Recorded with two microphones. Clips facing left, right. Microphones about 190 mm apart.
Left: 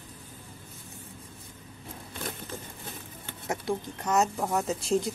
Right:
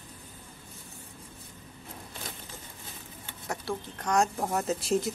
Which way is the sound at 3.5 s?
15° left (ahead or behind).